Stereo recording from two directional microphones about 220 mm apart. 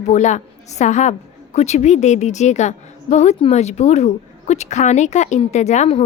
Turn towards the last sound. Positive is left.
turn(degrees=30)  # may be behind; listen again after turning